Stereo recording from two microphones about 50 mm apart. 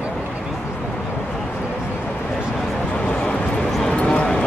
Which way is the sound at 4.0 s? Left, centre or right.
Left.